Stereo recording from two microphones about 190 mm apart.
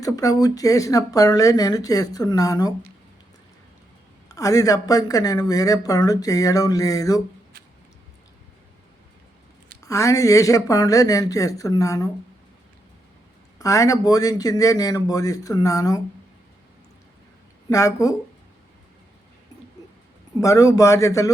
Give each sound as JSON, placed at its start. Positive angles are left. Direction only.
{"t": 0.0, "sound": "speech", "side_deg": 20}
{"t": 4.3, "sound": "speech", "side_deg": 20}
{"t": 9.8, "sound": "speech", "side_deg": 15}
{"t": 13.6, "sound": "speech", "side_deg": 15}
{"t": 17.7, "sound": "speech", "side_deg": 15}
{"t": 20.4, "sound": "speech", "side_deg": 15}